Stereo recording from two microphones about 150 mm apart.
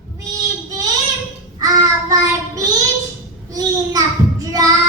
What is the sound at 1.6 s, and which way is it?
Child singing, 20° right (ahead or behind).